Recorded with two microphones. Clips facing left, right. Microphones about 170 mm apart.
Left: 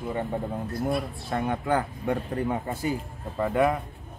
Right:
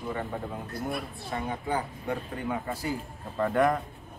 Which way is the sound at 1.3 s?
55° left (ahead or behind).